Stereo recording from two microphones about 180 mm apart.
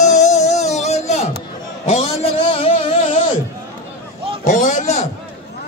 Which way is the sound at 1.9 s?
35° left (ahead or behind).